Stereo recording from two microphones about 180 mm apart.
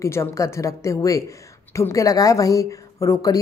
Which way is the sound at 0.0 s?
15° left (ahead or behind).